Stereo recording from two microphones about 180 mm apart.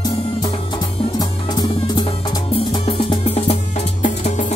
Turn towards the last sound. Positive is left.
turn(degrees=45)  # may be behind; listen again after turning